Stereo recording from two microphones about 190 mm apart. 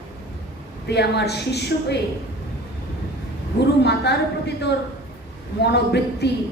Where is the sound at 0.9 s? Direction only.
60° left (ahead or behind).